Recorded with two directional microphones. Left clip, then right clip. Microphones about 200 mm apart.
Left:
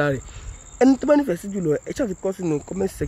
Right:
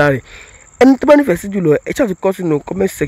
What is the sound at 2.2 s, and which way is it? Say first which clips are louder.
Speech: right 10 dB; 50° right (ahead or behind).